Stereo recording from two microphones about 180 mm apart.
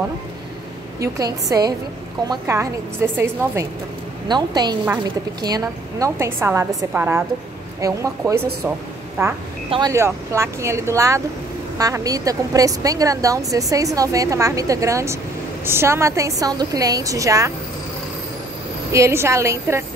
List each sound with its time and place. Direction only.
0.9 s a woman's voice: 20° right (ahead or behind)
4.3 s a woman's voice: 25° right (ahead or behind)
18.9 s a woman's voice: 15° right (ahead or behind)